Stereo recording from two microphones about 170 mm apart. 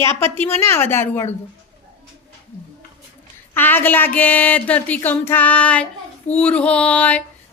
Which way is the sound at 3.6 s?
10° left (ahead or behind).